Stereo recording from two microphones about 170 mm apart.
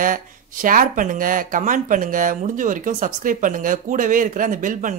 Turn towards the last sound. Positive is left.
turn(degrees=-50)  # may be behind; listen again after turning